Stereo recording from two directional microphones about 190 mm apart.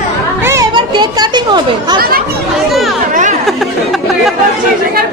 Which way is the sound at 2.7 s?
Centre (ahead or behind).